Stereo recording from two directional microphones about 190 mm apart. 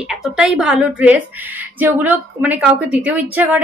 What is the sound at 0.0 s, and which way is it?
A woman's voice, 5° right (ahead or behind).